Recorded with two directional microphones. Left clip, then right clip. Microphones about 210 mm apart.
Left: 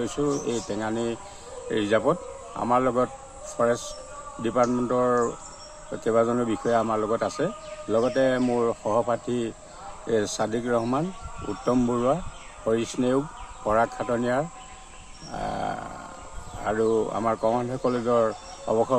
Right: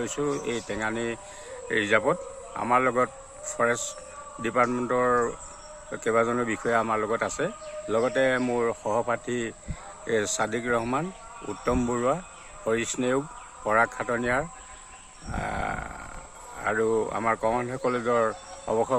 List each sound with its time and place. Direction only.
0.0 s speech: 15° right (ahead or behind)
15.3 s wild animals: 15° right (ahead or behind)
16.6 s speech: 20° right (ahead or behind)